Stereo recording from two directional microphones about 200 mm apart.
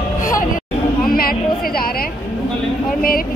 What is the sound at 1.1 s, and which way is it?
A woman's voice, 45° left (ahead or behind).